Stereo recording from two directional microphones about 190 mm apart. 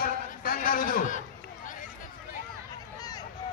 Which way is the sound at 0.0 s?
50° left (ahead or behind).